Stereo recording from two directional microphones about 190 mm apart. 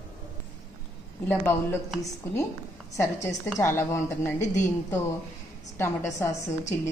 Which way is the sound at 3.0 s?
15° left (ahead or behind).